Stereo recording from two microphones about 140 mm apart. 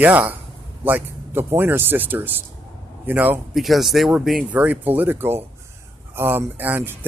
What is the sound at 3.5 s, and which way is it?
Speech, centre (ahead or behind).